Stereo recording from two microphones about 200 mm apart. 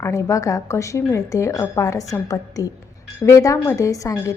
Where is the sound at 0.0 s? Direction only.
15° left (ahead or behind).